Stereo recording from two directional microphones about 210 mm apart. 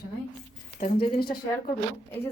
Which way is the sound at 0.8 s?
40° left (ahead or behind).